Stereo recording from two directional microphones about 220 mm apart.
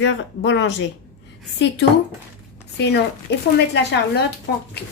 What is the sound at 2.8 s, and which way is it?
A woman's voice, 50° left (ahead or behind).